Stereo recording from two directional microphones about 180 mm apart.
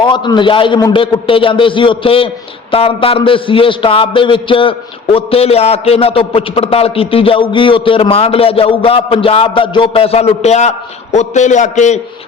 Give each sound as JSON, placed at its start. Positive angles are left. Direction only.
{"t": 0.0, "sound": "a man's voice", "side_deg": 25}